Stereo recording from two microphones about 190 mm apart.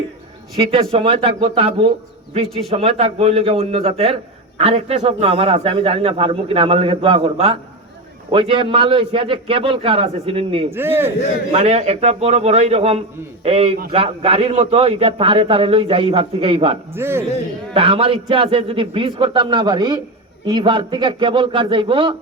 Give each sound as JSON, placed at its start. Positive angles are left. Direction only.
{"t": 0.6, "sound": "a man's voice", "side_deg": -30}
{"t": 10.7, "sound": "a man's voice", "side_deg": -10}
{"t": 11.5, "sound": "a man's voice", "side_deg": -35}
{"t": 16.9, "sound": "a man's voice", "side_deg": -10}
{"t": 17.7, "sound": "a man's voice", "side_deg": -30}